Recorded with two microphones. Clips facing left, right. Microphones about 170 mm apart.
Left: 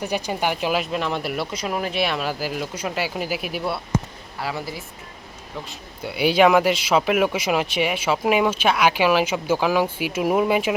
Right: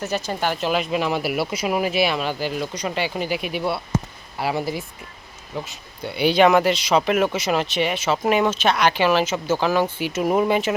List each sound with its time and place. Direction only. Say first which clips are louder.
0.0 s speech: even; 15° left (ahead or behind)
0.9 s speech: right 3 dB; 5° right (ahead or behind)
4.4 s speech: right 5 dB; 15° right (ahead or behind)
6.0 s speech: even; 5° left (ahead or behind)